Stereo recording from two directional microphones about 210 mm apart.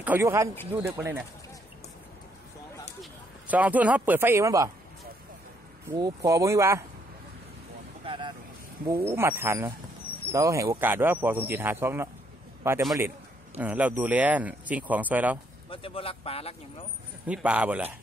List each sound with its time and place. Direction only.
0.0 s a man's voice: 10° right (ahead or behind)
3.0 s speech: 5° right (ahead or behind)
5.9 s a man's voice: 15° right (ahead or behind)
8.0 s vehicle: 25° right (ahead or behind)
8.8 s a man's voice: 10° right (ahead or behind)
15.7 s speech: 25° left (ahead or behind)
17.3 s a man's voice: 5° right (ahead or behind)